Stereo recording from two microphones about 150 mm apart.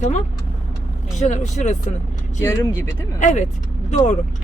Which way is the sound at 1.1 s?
50° left (ahead or behind).